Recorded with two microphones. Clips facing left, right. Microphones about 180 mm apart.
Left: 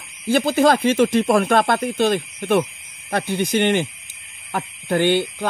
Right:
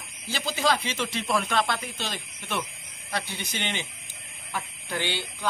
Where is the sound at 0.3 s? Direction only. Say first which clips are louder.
Left 11 dB; 55° left (ahead or behind).